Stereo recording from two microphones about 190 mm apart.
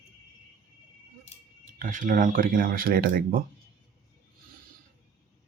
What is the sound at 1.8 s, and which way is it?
Speech, 45° right (ahead or behind).